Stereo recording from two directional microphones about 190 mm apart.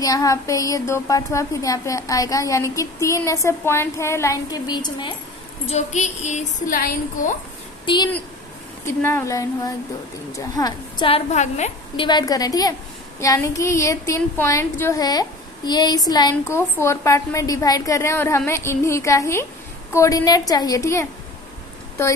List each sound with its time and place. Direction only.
0.0 s speech: 20° left (ahead or behind)
5.7 s a woman's voice: 35° left (ahead or behind)
7.8 s speech: 25° left (ahead or behind)
8.8 s a woman's voice: 15° left (ahead or behind); by 11.7 s 40° left (ahead or behind)
12.0 s a woman's voice: 20° left (ahead or behind)